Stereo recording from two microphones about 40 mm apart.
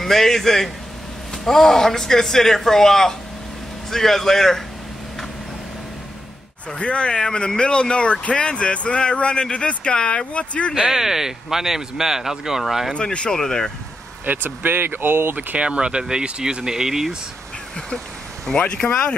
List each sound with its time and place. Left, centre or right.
0.0 s speech: centre
6.8 s speech: left
10.9 s speech: centre
12.9 s speech: left
14.2 s speech: right
15.6 s speech: right
18.6 s speech: left